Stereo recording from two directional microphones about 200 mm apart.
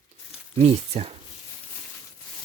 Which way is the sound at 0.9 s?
25° right (ahead or behind).